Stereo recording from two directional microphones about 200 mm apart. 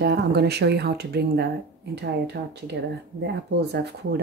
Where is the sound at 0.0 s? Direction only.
55° right (ahead or behind).